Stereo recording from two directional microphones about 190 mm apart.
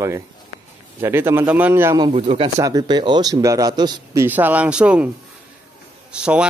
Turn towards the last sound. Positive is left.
turn(degrees=-5)  # may be behind; listen again after turning